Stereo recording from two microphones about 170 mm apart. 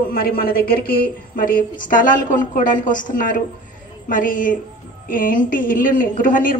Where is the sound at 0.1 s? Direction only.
60° left (ahead or behind).